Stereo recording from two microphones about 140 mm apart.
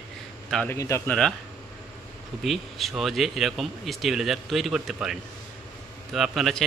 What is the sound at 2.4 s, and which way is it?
Speech, centre (ahead or behind).